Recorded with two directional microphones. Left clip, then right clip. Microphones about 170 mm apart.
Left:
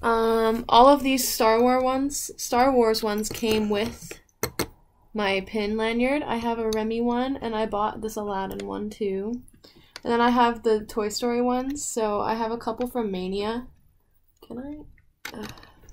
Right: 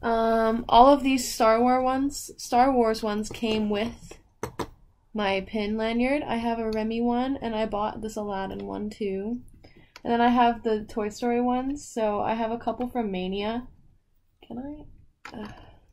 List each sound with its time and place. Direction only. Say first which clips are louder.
0.0 s a woman's voice: left 1 dB; 10° right (ahead or behind)
5.1 s a woman's voice: left 1 dB; 10° right (ahead or behind)